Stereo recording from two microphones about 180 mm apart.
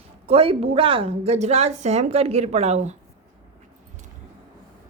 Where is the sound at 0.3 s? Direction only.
30° right (ahead or behind).